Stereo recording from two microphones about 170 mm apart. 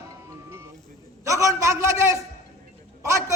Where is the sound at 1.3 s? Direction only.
20° right (ahead or behind).